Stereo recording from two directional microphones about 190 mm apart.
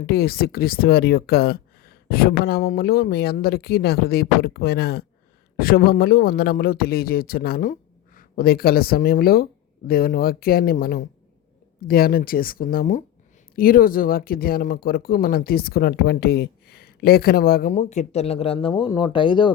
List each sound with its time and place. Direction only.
0.1 s speech: 55° left (ahead or behind); by 19.5 s 25° left (ahead or behind)